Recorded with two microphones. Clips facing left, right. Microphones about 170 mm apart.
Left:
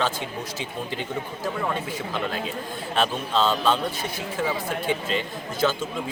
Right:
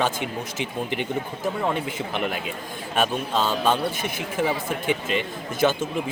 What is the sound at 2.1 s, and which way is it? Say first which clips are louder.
Speech: left 1 dB; 15° right (ahead or behind).